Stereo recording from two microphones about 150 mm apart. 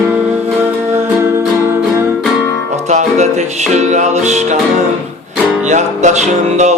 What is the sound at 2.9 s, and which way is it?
Music, 50° right (ahead or behind).